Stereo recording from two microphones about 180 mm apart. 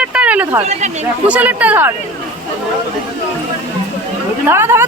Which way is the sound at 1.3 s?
10° right (ahead or behind).